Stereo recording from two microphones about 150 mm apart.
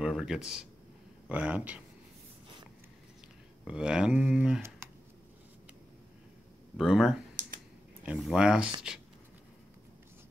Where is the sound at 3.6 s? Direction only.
5° right (ahead or behind).